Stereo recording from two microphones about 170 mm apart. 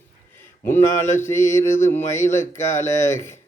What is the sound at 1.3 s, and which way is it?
Mantra, 15° left (ahead or behind).